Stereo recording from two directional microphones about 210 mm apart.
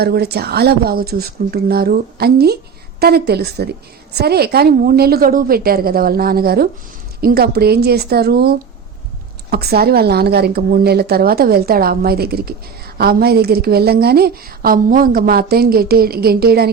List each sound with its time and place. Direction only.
0.0 s a woman's voice: 50° right (ahead or behind)